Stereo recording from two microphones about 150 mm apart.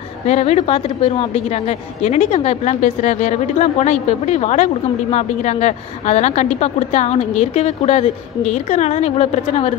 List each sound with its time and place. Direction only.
0.3 s a woman's voice: 45° left (ahead or behind)